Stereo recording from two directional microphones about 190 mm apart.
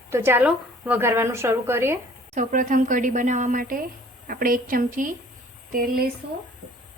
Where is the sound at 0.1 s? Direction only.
15° right (ahead or behind).